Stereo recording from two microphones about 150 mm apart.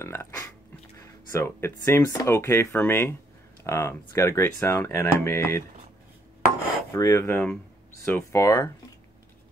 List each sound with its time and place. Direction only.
0.0 s speech: 15° left (ahead or behind)
6.9 s speech: 20° left (ahead or behind)